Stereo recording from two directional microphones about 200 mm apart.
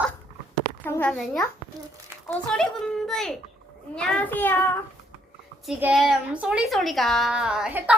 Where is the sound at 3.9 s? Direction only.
5° left (ahead or behind).